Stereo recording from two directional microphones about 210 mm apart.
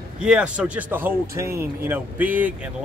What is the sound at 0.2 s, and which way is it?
Speech, 5° right (ahead or behind).